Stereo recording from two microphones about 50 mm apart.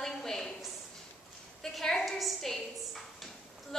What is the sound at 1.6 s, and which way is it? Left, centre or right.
A woman's voice, centre.